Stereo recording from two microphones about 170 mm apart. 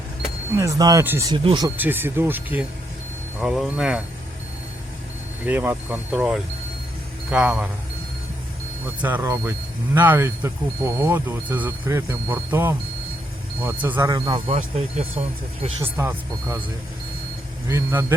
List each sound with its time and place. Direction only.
0.5 s speech: 20° right (ahead or behind)
1.3 s speech: 25° right (ahead or behind)
1.7 s speech: 10° right (ahead or behind)
5.5 s speech: 10° right (ahead or behind)
9.0 s speech: 10° right (ahead or behind)
14.1 s speech: 25° right (ahead or behind)
15.8 s speech: 15° right (ahead or behind)
17.7 s speech: 15° right (ahead or behind)